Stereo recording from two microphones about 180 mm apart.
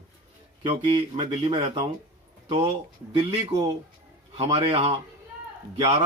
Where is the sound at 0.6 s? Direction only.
30° right (ahead or behind).